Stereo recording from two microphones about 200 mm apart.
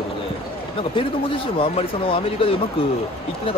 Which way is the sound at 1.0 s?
25° left (ahead or behind).